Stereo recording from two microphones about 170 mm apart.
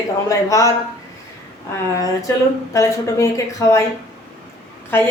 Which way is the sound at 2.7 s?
15° left (ahead or behind).